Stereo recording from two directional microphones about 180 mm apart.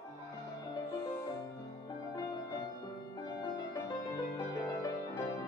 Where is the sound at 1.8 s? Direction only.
20° left (ahead or behind).